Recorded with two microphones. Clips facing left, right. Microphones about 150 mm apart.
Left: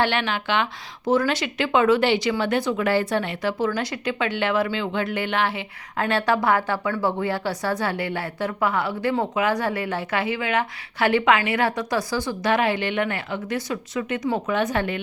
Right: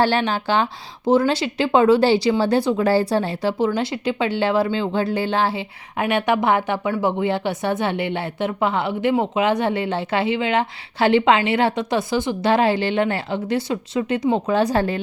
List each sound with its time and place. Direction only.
0.0 s speech: 35° right (ahead or behind)
6.0 s speech: 20° right (ahead or behind); by 15.0 s 35° right (ahead or behind)